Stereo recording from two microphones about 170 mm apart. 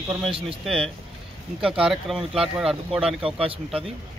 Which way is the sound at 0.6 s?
5° left (ahead or behind).